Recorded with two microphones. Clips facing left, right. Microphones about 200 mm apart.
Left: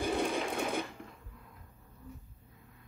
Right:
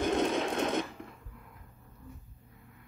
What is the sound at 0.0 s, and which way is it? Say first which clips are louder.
Sewing machine: right 3 dB; 10° left (ahead or behind).